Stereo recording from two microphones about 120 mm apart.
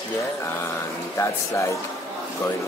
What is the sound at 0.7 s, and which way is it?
Speech, 25° left (ahead or behind).